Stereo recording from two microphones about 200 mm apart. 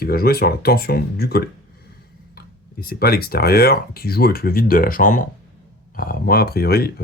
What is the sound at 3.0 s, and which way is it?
Speech, 50° left (ahead or behind).